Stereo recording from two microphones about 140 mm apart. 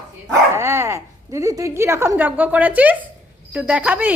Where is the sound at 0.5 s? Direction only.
20° right (ahead or behind).